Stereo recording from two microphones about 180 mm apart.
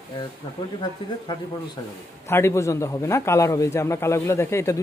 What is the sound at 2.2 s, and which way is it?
A man's voice, 15° left (ahead or behind).